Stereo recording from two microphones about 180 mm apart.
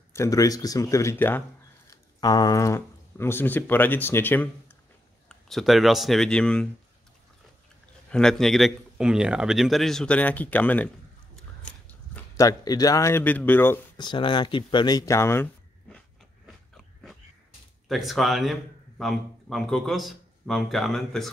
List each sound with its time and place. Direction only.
0.1 s a man's voice: 15° left (ahead or behind)
5.3 s a man's voice: centre (ahead or behind)
8.1 s a man's voice: 5° left (ahead or behind)
12.4 s a man's voice: 20° left (ahead or behind)
13.9 s speech: 25° left (ahead or behind)
16.7 s biting: centre (ahead or behind)
17.8 s a man's voice: centre (ahead or behind)